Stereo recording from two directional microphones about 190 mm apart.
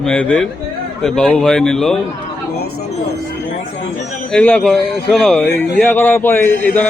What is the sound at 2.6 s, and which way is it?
Speech, 55° left (ahead or behind).